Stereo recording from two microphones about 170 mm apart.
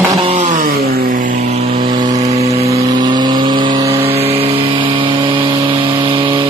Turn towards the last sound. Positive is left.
turn(degrees=-30)  # may be behind; listen again after turning